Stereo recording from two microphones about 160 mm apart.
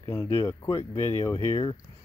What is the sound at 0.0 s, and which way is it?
Speech, 25° left (ahead or behind).